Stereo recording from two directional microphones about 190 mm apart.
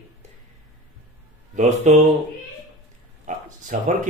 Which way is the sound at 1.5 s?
40° right (ahead or behind).